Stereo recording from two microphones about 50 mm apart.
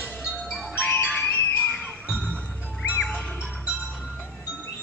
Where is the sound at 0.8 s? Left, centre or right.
Left.